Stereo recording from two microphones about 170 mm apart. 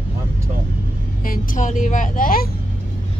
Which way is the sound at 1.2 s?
55° left (ahead or behind).